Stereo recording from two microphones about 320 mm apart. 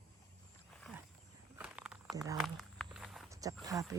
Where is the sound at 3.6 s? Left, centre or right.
Centre.